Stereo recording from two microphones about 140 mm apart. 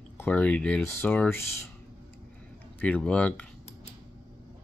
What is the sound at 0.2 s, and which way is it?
Speech, 10° left (ahead or behind).